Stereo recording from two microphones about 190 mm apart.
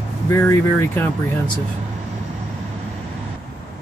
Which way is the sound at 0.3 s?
15° left (ahead or behind).